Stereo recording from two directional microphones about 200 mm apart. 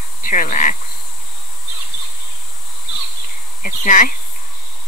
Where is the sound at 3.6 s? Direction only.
40° left (ahead or behind).